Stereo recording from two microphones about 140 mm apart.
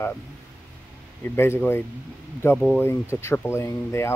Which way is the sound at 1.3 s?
15° left (ahead or behind).